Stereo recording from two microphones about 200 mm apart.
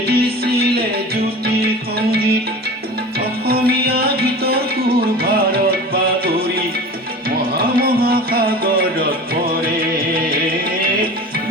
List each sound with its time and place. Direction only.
0.1 s music: 50° right (ahead or behind)
3.4 s music: 50° right (ahead or behind)